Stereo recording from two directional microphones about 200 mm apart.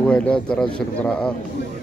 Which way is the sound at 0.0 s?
5° left (ahead or behind).